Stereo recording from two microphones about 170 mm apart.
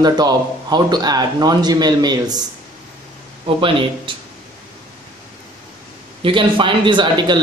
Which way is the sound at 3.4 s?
30° right (ahead or behind).